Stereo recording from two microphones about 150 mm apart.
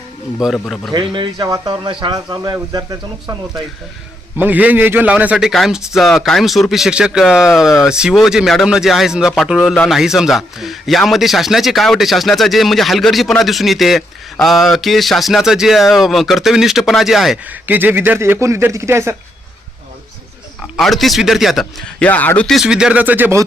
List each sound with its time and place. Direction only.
0.4 s a man's voice: centre (ahead or behind)
0.9 s speech: 30° right (ahead or behind)
4.4 s a man's voice: 10° right (ahead or behind)
20.6 s a man's voice: centre (ahead or behind)
22.5 s speech: 5° right (ahead or behind)